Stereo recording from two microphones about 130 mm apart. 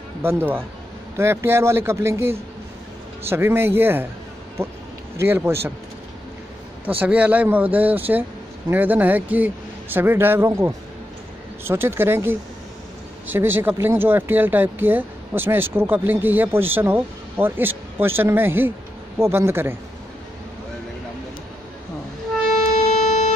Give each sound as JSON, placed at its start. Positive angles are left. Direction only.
{"t": 0.2, "sound": "speech", "side_deg": -15}
{"t": 5.1, "sound": "speech", "side_deg": -20}
{"t": 7.0, "sound": "speech", "side_deg": -10}